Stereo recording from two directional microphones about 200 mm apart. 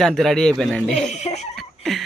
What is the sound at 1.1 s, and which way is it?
Laughter, 35° left (ahead or behind).